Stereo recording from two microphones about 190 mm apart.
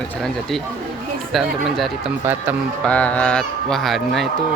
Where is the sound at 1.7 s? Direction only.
Centre (ahead or behind).